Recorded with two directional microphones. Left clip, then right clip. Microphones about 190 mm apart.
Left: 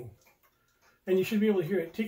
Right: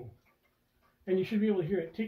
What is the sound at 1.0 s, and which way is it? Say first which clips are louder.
Speech: left 4 dB; 10° left (ahead or behind).